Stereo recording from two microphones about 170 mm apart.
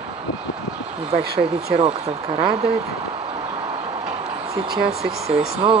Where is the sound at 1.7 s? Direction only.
35° right (ahead or behind).